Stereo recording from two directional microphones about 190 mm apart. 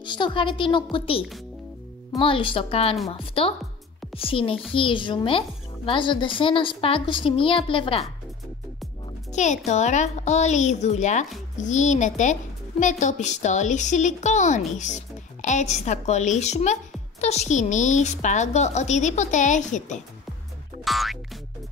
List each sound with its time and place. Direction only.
0.0 s a woman's voice: 25° left (ahead or behind)
9.3 s a child's voice: 40° left (ahead or behind)
20.8 s music: centre (ahead or behind)